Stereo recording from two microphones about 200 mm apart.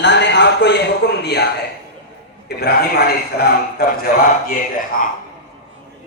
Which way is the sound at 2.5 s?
50° left (ahead or behind).